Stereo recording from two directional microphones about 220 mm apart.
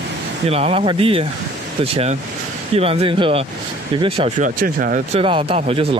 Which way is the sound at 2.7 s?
25° right (ahead or behind).